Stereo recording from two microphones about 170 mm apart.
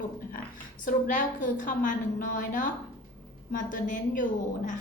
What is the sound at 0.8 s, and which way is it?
A woman's voice, 50° left (ahead or behind).